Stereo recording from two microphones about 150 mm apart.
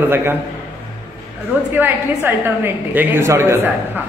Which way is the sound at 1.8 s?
15° right (ahead or behind).